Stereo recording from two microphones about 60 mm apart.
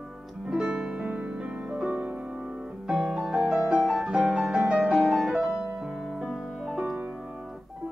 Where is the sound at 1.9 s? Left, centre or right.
Right; by 7.1 s centre.